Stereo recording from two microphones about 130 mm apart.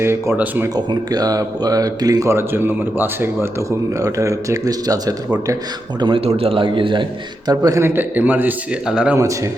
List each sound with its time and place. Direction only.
0.0 s speech: 20° right (ahead or behind)
0.9 s speech: 30° right (ahead or behind)
6.0 s a man's voice: 45° right (ahead or behind)
7.5 s a man's voice: 25° right (ahead or behind); by 9.1 s 5° right (ahead or behind)
9.1 s speech: 25° right (ahead or behind)